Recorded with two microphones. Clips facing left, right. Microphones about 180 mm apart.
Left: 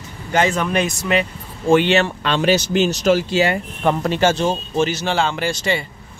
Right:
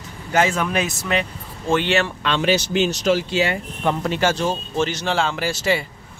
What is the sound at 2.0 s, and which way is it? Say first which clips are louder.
Speech: left 2 dB; 40° left (ahead or behind).